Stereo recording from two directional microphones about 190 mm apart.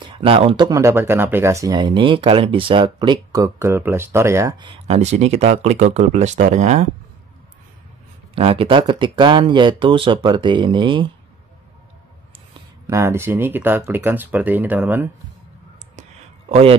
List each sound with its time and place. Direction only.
0.2 s speech: 30° right (ahead or behind)
8.4 s speech: 30° right (ahead or behind)
12.8 s speech: 15° right (ahead or behind)
16.0 s a sound: 30° right (ahead or behind)